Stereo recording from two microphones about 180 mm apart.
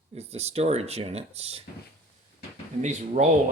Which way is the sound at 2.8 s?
40° right (ahead or behind).